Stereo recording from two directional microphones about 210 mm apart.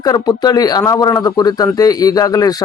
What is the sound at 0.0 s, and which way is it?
Speech, 20° left (ahead or behind).